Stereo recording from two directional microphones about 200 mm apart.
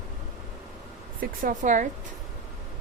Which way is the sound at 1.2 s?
45° right (ahead or behind).